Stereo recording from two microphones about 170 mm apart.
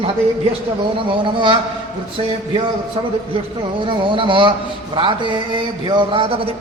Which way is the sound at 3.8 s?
30° right (ahead or behind).